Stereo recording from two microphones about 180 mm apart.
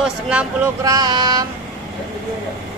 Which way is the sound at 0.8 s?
20° right (ahead or behind).